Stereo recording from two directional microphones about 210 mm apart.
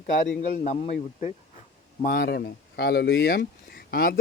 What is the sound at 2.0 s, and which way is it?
Speech, 40° left (ahead or behind).